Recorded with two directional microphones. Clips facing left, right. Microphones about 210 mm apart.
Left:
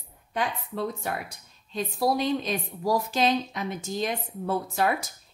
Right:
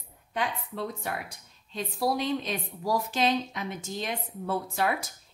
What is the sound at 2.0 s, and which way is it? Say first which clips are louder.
A woman's voice: left 3 dB; 40° left (ahead or behind).